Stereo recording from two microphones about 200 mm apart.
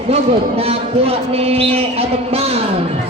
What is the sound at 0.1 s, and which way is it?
A man's voice, 30° right (ahead or behind).